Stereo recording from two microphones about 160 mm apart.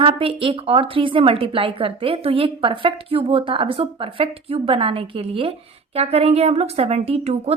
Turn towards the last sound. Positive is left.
turn(degrees=-40)  # may be behind; listen again after turning